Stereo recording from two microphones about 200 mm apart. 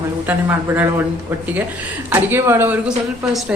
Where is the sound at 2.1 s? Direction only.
10° right (ahead or behind).